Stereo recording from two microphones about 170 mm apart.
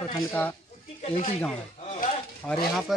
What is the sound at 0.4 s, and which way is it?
Speech, 10° left (ahead or behind).